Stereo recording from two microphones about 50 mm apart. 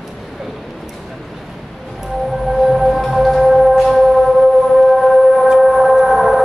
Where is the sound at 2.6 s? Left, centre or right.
Centre.